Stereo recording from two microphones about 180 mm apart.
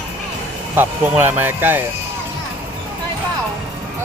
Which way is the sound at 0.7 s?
10° right (ahead or behind).